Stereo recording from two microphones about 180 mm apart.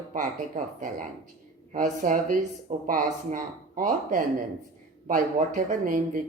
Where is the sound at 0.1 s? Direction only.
45° right (ahead or behind).